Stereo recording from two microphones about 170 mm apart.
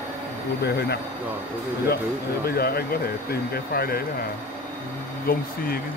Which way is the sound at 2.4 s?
65° left (ahead or behind).